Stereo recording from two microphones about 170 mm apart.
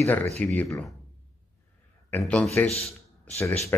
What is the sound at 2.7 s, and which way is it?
Speech, 35° left (ahead or behind).